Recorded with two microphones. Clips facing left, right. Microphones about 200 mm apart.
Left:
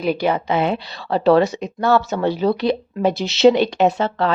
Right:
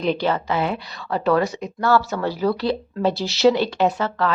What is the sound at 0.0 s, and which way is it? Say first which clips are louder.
Speech: left 2 dB; 10° left (ahead or behind).